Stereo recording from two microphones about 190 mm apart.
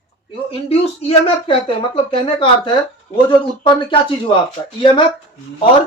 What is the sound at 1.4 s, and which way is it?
Speech, 25° left (ahead or behind).